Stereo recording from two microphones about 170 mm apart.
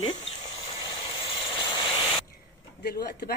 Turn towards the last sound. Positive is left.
turn(degrees=70)  # may be behind; listen again after turning